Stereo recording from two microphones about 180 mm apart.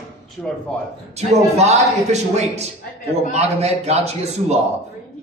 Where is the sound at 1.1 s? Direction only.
40° right (ahead or behind).